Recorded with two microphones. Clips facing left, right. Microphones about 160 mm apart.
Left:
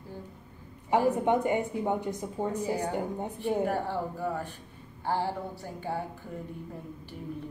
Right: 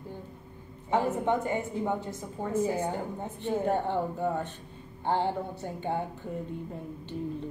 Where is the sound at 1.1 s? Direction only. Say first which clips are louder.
Left 2 dB; 20° left (ahead or behind).